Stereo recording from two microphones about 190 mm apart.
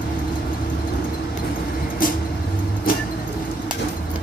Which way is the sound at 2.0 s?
45° left (ahead or behind).